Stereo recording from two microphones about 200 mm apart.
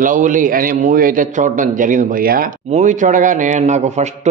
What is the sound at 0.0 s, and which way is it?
Speech, 40° right (ahead or behind).